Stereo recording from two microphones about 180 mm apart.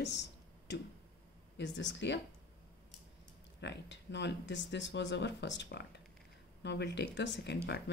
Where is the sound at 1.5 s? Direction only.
85° left.